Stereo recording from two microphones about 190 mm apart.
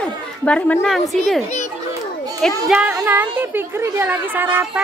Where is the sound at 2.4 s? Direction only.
Centre (ahead or behind).